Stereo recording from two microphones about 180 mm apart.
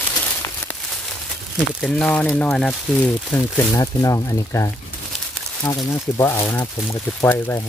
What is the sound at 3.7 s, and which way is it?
Speech, 20° left (ahead or behind).